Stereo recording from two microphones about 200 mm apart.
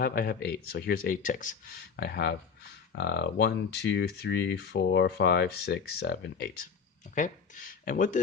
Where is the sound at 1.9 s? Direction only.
50° left (ahead or behind).